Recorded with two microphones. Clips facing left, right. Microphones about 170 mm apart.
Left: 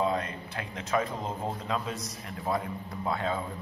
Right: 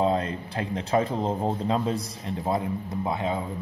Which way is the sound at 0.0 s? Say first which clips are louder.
Right 5 dB; 30° right (ahead or behind).